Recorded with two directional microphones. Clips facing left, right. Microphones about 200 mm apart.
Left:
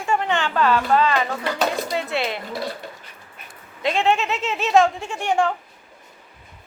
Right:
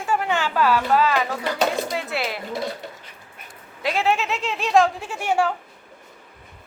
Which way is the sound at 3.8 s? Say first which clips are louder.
Left 2 dB; 5° right (ahead or behind).